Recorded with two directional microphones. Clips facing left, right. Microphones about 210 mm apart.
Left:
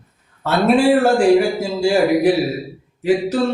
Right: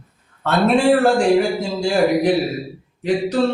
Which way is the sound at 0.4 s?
5° left (ahead or behind).